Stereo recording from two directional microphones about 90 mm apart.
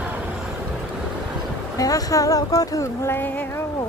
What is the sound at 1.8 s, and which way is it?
Speech, 40° left (ahead or behind).